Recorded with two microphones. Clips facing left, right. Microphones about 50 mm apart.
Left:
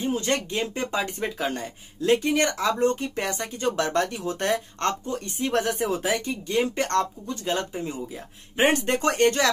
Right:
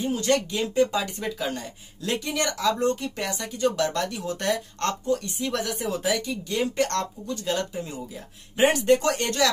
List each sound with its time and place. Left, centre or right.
0.0 s speech: left